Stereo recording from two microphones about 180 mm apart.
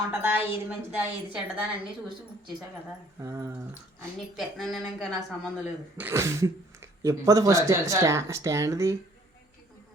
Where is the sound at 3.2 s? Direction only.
15° right (ahead or behind).